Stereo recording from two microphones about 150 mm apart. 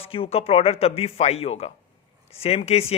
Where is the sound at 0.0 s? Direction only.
40° left (ahead or behind).